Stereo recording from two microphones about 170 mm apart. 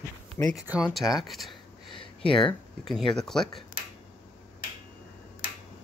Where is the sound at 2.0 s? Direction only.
30° left (ahead or behind).